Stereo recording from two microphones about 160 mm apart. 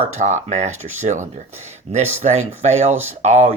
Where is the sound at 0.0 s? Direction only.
45° right (ahead or behind).